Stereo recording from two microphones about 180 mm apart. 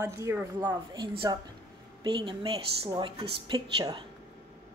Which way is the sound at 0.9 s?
25° right (ahead or behind).